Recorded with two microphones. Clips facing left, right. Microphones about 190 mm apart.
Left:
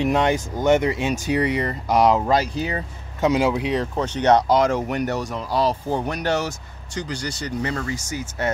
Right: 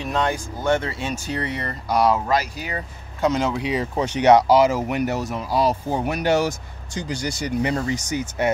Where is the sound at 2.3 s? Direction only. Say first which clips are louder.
Left 3 dB; 30° left (ahead or behind).